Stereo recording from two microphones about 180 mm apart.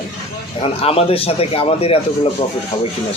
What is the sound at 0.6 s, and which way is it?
Speech, 30° left (ahead or behind).